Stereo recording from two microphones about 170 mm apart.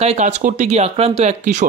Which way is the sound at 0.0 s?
40° right (ahead or behind).